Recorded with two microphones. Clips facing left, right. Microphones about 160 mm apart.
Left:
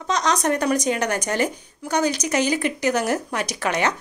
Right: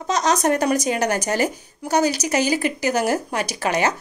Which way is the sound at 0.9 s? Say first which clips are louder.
Right 1 dB; 35° right (ahead or behind).